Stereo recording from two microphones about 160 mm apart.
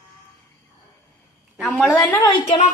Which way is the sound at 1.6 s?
Centre (ahead or behind).